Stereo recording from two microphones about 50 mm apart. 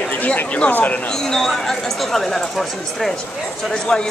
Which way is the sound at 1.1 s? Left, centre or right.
Centre.